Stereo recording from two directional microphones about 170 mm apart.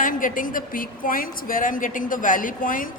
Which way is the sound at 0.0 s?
50° left (ahead or behind).